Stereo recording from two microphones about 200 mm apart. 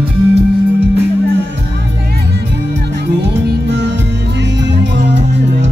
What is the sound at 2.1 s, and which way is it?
Music, 55° right (ahead or behind).